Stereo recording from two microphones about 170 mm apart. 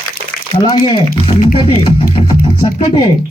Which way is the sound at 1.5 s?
30° left (ahead or behind).